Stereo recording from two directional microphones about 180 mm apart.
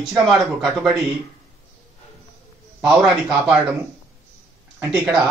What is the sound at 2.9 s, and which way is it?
Speech, 5° right (ahead or behind).